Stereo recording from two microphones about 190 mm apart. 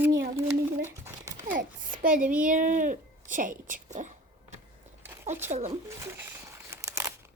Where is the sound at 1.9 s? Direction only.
45° right (ahead or behind).